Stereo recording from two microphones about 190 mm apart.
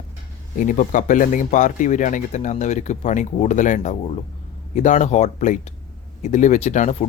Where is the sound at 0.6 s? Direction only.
40° left (ahead or behind).